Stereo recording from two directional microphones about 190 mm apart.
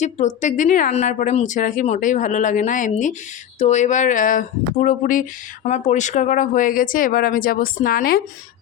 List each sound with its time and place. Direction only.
0.0 s speech: 40° left (ahead or behind)